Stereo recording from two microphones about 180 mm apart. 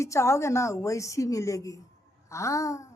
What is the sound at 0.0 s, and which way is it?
A woman's voice, 15° left (ahead or behind).